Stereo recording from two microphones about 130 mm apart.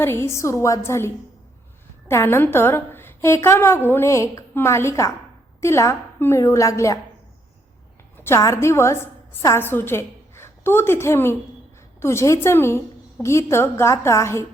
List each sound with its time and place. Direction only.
0.0 s a woman's voice: 20° left (ahead or behind)
8.1 s a woman's voice: 20° left (ahead or behind)